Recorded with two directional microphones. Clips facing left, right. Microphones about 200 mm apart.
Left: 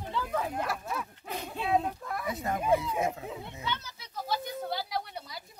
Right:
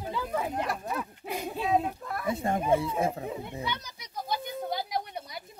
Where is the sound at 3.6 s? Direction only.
15° right (ahead or behind).